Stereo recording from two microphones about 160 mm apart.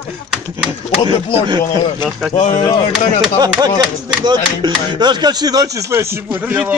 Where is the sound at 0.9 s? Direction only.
35° left (ahead or behind).